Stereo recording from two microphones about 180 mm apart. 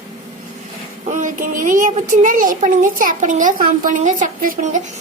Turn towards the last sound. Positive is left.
turn(degrees=-45)  # may be behind; listen again after turning